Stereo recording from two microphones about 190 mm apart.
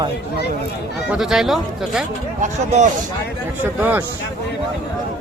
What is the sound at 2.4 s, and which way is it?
Speech, 40° right (ahead or behind).